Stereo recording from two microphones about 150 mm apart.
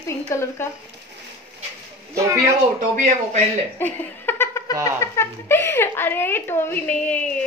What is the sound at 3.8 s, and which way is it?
Giggle, 15° left (ahead or behind).